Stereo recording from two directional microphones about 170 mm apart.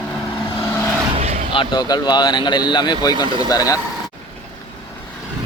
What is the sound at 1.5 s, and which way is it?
Speech, 30° left (ahead or behind).